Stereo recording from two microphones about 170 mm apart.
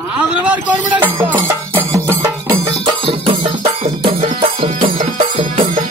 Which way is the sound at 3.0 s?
30° right (ahead or behind).